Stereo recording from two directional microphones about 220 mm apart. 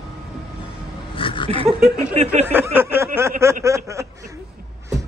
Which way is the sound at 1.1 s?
25° left (ahead or behind).